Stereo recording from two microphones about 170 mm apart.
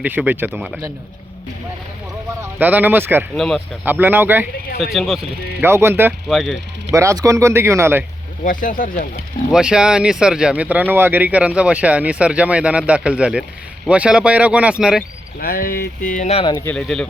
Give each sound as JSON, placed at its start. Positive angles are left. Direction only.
{"t": 0.0, "sound": "speech", "side_deg": -10}
{"t": 2.4, "sound": "speech", "side_deg": -10}
{"t": 3.3, "sound": "speech", "side_deg": 0}
{"t": 3.8, "sound": "speech", "side_deg": -10}
{"t": 4.9, "sound": "speech", "side_deg": 0}
{"t": 5.5, "sound": "speech", "side_deg": -15}
{"t": 6.2, "sound": "speech", "side_deg": 0}
{"t": 6.9, "sound": "speech", "side_deg": -20}
{"t": 8.4, "sound": "speech", "side_deg": 50}
{"t": 9.5, "sound": "speech", "side_deg": -5}
{"t": 15.4, "sound": "speech", "side_deg": 60}
{"t": 16.4, "sound": "speech", "side_deg": 25}
{"t": 16.6, "sound": "speech", "side_deg": 5}